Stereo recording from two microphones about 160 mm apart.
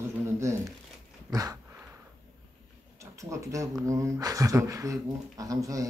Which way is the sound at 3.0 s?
20° right (ahead or behind).